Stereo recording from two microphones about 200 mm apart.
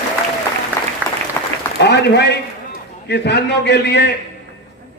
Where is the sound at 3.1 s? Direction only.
55° left (ahead or behind).